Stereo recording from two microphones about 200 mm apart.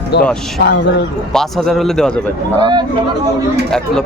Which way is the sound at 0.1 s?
55° left (ahead or behind).